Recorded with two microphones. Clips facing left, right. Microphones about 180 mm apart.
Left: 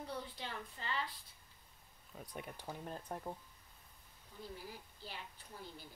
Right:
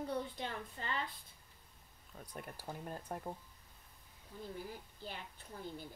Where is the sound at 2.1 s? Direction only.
Centre (ahead or behind).